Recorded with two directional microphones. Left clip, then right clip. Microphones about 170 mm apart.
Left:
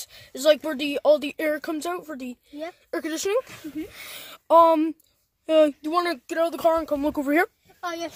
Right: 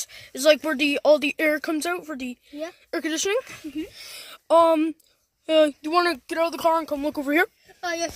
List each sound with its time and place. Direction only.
0.0 s speech: 10° right (ahead or behind)
3.9 s speech: 40° left (ahead or behind)
4.5 s speech: centre (ahead or behind)
5.8 s speech: 10° right (ahead or behind); by 7.5 s 5° left (ahead or behind)